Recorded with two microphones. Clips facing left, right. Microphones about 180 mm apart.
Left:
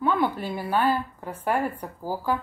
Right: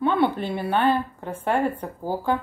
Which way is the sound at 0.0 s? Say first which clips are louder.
Right 3 dB; 25° right (ahead or behind).